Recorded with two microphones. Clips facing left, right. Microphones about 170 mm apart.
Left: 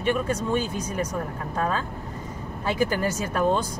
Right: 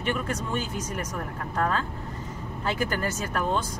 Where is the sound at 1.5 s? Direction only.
15° left (ahead or behind).